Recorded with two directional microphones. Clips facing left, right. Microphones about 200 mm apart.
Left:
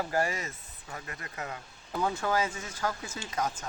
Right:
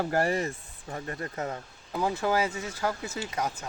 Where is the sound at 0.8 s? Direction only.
35° right (ahead or behind).